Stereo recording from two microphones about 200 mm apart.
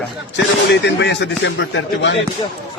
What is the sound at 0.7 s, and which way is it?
Speech, 60° left (ahead or behind).